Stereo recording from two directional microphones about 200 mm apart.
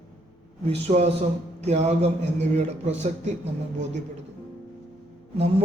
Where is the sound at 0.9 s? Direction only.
35° right (ahead or behind).